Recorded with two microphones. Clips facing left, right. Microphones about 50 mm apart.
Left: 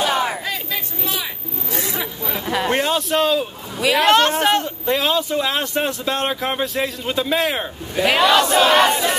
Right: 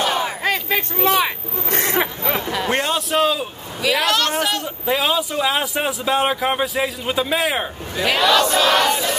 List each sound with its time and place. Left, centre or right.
0.4 s hubbub: right
2.4 s a sound: centre
3.8 s battle cry: centre
4.4 s speech: left
4.6 s speech: centre
8.0 s battle cry: centre